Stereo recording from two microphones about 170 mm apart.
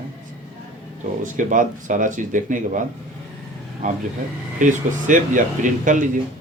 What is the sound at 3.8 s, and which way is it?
Speech, 50° right (ahead or behind).